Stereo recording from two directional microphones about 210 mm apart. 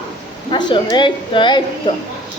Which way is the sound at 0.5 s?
20° left (ahead or behind).